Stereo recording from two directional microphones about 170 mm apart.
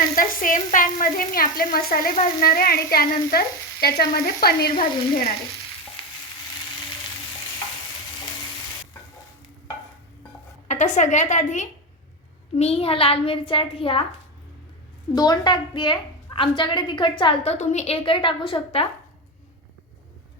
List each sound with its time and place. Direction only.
0.2 s a woman's voice: 50° left (ahead or behind)
2.4 s frying: 60° left (ahead or behind)
10.7 s a woman's voice: 45° left (ahead or behind)
15.1 s a woman's voice: 25° left (ahead or behind)